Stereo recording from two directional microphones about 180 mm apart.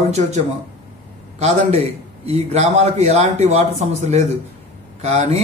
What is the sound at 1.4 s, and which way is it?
A man's voice, 35° right (ahead or behind).